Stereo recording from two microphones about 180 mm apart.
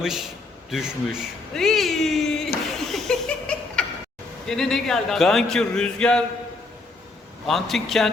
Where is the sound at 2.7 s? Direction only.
Centre (ahead or behind).